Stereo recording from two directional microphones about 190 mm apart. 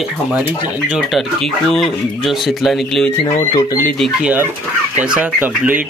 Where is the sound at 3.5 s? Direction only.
15° left (ahead or behind).